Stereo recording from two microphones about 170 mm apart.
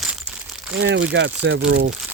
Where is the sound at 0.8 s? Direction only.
90° right.